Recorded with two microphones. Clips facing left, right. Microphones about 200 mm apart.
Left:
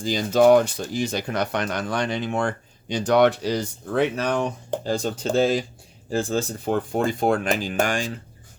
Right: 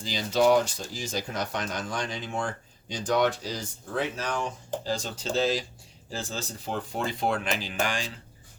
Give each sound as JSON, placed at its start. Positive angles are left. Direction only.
{"t": 0.0, "sound": "speech", "side_deg": 50}